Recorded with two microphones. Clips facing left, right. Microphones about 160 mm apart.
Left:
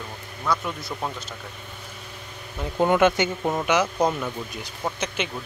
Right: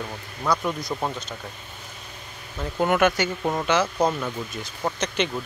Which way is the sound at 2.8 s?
20° left (ahead or behind).